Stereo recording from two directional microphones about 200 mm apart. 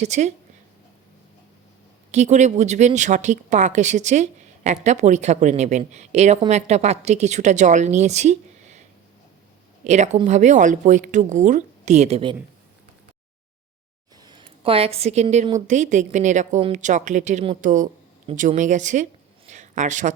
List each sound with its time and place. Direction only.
0.0 s speech: 35° right (ahead or behind)
2.1 s speech: 35° right (ahead or behind)
9.8 s speech: 35° right (ahead or behind)
14.3 s a woman's voice: 25° right (ahead or behind)
19.5 s a sound: 35° right (ahead or behind)